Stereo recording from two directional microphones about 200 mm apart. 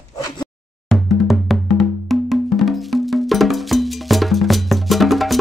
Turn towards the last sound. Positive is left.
turn(degrees=0)  # may be behind; listen again after turning